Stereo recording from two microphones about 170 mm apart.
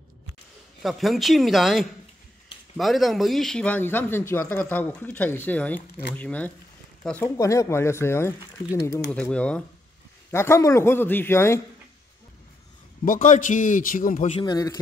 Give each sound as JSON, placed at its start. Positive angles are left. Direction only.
{"t": 0.8, "sound": "a man's voice", "side_deg": 0}
{"t": 7.2, "sound": "a man's voice", "side_deg": 20}
{"t": 9.1, "sound": "a man's voice", "side_deg": 5}
{"t": 13.0, "sound": "a man's voice", "side_deg": 50}
{"t": 14.3, "sound": "speech", "side_deg": 25}